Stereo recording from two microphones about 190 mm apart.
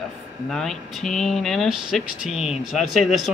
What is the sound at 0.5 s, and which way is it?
Speech, centre (ahead or behind).